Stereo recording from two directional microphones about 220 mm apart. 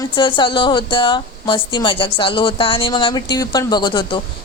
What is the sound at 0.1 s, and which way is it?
A woman's voice, 20° left (ahead or behind).